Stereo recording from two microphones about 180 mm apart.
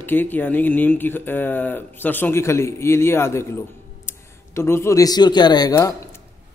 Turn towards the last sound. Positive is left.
turn(degrees=20)  # may be behind; listen again after turning